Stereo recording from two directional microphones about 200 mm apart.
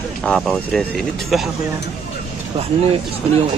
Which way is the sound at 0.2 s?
Centre (ahead or behind).